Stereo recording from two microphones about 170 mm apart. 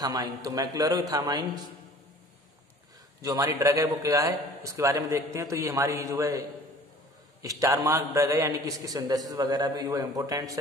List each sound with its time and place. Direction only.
0.0 s a man's voice: 20° right (ahead or behind)
3.2 s a man's voice: 20° right (ahead or behind)
7.4 s a man's voice: 20° right (ahead or behind)